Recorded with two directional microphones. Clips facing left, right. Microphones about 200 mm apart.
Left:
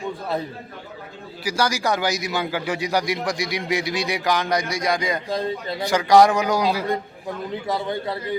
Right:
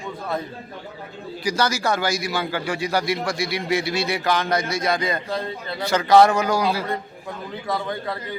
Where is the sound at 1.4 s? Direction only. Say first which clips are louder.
Even; 10° left (ahead or behind).